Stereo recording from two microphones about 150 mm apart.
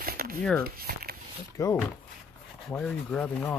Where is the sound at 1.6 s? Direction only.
25° left (ahead or behind).